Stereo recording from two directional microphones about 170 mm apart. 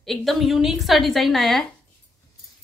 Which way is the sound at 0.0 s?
Centre (ahead or behind).